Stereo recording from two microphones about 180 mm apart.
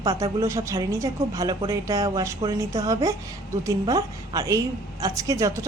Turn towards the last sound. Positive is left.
turn(degrees=-15)  # may be behind; listen again after turning